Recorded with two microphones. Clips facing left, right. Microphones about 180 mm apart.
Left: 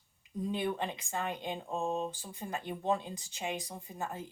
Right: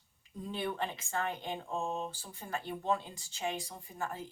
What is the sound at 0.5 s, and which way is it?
Speech, 15° left (ahead or behind).